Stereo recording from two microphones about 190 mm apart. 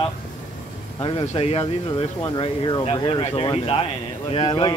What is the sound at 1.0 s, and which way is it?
Speech, 25° left (ahead or behind).